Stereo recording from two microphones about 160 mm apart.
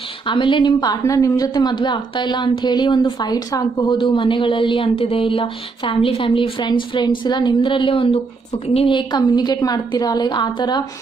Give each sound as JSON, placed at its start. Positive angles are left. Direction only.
{"t": 0.3, "sound": "a woman's voice", "side_deg": 30}